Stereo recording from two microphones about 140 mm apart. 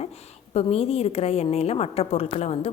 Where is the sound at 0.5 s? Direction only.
45° left (ahead or behind).